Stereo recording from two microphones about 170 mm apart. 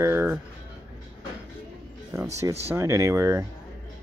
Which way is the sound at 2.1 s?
15° right (ahead or behind).